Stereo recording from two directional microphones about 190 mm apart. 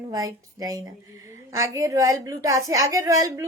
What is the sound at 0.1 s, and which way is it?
A woman's voice, 20° right (ahead or behind).